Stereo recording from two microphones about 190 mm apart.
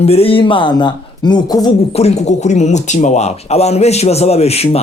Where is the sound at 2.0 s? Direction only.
35° left (ahead or behind).